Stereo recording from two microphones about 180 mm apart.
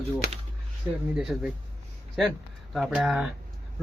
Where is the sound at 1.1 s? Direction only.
5° right (ahead or behind).